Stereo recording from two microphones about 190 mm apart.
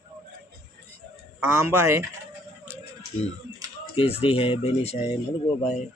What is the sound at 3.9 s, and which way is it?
Speech, 30° left (ahead or behind).